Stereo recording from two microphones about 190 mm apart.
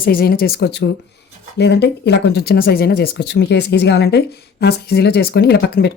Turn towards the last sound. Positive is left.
turn(degrees=60)  # may be behind; listen again after turning